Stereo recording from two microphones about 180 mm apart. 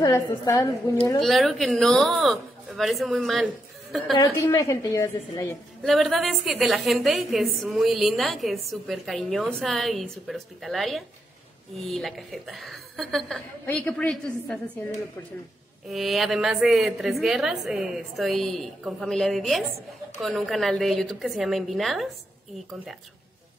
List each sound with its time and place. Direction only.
0.0 s a woman's voice: 20° left (ahead or behind)
1.2 s a woman's voice: centre (ahead or behind)
4.2 s a woman's voice: 15° left (ahead or behind)
5.8 s a woman's voice: centre (ahead or behind)
15.9 s a woman's voice: centre (ahead or behind)